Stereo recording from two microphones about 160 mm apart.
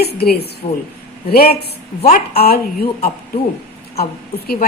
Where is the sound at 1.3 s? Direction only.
70° left (ahead or behind).